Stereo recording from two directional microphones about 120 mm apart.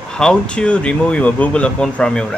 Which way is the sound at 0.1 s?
5° left (ahead or behind).